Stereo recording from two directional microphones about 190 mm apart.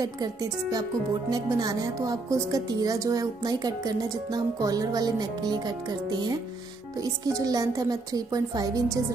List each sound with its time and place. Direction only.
0.0 s a woman's voice: 20° right (ahead or behind)